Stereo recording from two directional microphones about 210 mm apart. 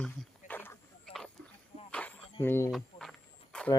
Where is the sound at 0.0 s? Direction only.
5° left (ahead or behind).